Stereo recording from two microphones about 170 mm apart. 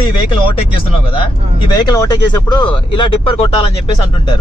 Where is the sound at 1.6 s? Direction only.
25° left (ahead or behind).